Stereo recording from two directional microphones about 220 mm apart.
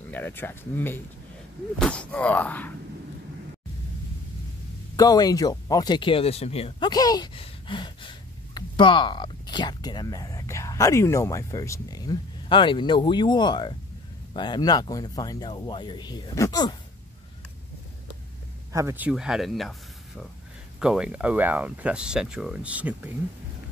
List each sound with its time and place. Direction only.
0.1 s speech: 10° left (ahead or behind)
4.9 s speech: 15° left (ahead or behind)
18.7 s speech: 15° right (ahead or behind)
20.8 s speech: 5° right (ahead or behind)